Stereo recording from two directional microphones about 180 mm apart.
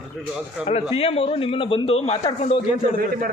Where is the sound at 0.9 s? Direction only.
30° left (ahead or behind).